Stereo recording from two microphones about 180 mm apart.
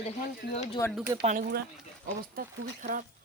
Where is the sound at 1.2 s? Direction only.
50° right (ahead or behind).